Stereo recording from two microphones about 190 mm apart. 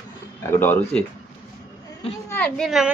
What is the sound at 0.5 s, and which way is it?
Speech, 10° left (ahead or behind).